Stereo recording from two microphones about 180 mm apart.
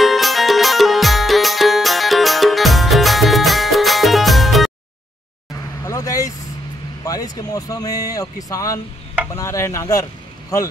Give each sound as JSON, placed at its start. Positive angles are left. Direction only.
{"t": 0.0, "sound": "music", "side_deg": 0}
{"t": 5.9, "sound": "vehicle", "side_deg": 20}
{"t": 7.1, "sound": "speech", "side_deg": 20}